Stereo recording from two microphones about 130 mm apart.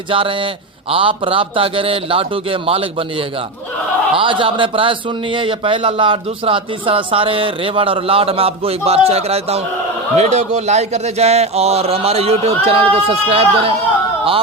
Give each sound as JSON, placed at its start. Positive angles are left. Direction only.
{"t": 0.1, "sound": "a man's voice", "side_deg": -40}